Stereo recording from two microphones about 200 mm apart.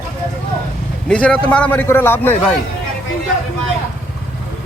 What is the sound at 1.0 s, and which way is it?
Speech, 5° left (ahead or behind).